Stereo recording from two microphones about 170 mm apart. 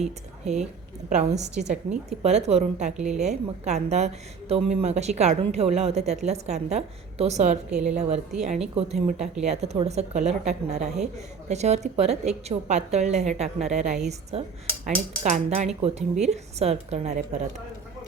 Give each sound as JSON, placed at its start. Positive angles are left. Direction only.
{"t": 0.4, "sound": "a woman's voice", "side_deg": -40}